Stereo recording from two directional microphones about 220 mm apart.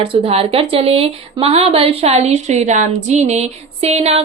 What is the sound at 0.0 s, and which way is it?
A woman's voice, 25° right (ahead or behind).